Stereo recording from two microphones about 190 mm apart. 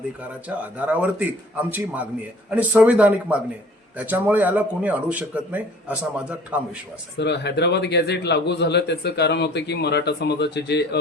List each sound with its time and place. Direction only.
0.4 s speech: 5° right (ahead or behind)
7.2 s a man's voice: 65° left (ahead or behind)